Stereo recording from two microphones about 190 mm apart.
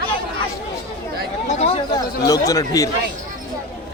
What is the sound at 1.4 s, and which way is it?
Chatter, 35° left (ahead or behind).